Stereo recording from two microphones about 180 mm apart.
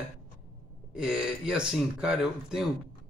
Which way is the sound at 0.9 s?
5° right (ahead or behind).